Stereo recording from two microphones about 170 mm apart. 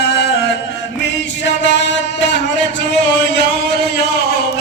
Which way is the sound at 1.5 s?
90° left.